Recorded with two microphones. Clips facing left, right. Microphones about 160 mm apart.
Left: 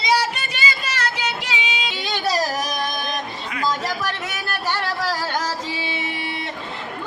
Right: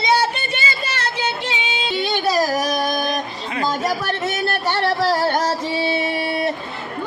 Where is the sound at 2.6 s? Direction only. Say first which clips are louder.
Right 5 dB; 50° right (ahead or behind).